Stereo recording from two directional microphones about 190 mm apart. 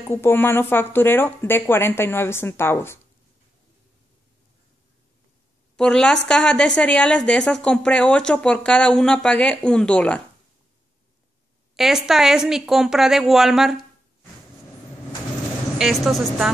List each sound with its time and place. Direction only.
0.1 s speech: 10° left (ahead or behind)
5.8 s a woman's voice: 5° left (ahead or behind)
11.7 s a woman's voice: centre (ahead or behind)
15.8 s a woman's voice: centre (ahead or behind)